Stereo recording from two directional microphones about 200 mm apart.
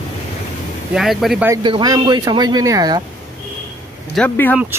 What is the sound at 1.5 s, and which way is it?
Speech, 20° right (ahead or behind).